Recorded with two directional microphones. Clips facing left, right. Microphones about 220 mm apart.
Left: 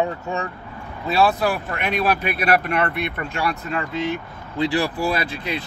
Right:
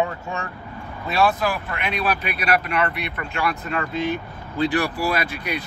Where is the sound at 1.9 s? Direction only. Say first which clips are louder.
Left 4 dB; 45° left (ahead or behind).